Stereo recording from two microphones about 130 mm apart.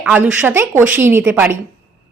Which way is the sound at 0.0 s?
10° right (ahead or behind).